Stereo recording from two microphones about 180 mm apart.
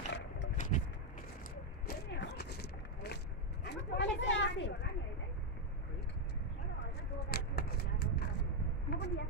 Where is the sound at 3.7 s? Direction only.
80° left.